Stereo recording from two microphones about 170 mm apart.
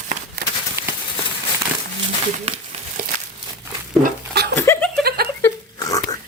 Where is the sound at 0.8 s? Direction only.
15° right (ahead or behind).